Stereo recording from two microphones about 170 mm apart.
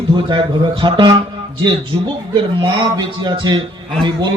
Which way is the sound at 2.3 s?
30° right (ahead or behind).